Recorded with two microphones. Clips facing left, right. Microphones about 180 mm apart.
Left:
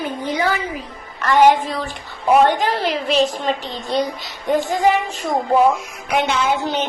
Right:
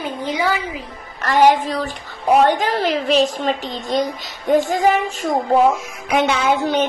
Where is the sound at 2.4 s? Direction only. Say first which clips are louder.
Right 1 dB; 45° right (ahead or behind).